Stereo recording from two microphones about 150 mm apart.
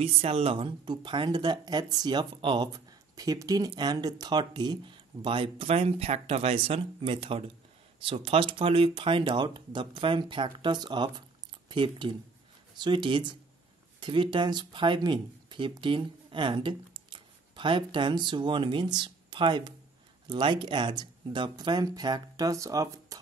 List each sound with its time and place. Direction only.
0.0 s speech: 40° right (ahead or behind); by 23.2 s 25° right (ahead or behind)